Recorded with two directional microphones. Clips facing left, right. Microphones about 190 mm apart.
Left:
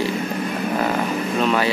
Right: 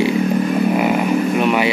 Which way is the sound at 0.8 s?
15° right (ahead or behind).